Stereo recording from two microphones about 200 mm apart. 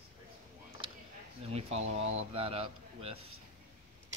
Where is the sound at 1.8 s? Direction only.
75° right (ahead or behind).